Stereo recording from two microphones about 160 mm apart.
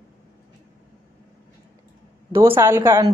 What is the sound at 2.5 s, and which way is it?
Speech, 15° right (ahead or behind).